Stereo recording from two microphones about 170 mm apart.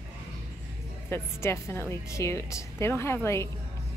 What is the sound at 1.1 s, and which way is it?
A woman's voice, 15° left (ahead or behind).